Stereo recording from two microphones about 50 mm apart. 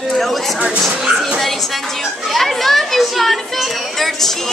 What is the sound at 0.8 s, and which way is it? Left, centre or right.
Music, centre.